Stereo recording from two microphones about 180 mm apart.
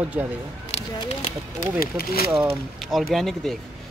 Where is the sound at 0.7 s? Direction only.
30° left (ahead or behind).